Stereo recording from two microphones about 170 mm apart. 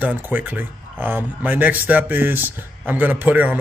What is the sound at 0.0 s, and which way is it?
A man's voice, 10° right (ahead or behind).